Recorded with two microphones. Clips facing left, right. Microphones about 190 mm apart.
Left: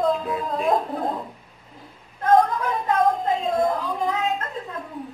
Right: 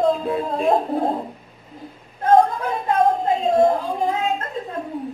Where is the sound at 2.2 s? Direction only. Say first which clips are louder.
Right 2 dB; 30° right (ahead or behind).